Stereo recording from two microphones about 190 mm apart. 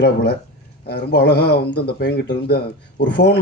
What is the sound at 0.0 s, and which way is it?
Speech, 60° left (ahead or behind).